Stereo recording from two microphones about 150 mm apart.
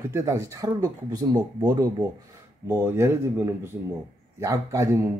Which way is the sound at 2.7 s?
15° right (ahead or behind).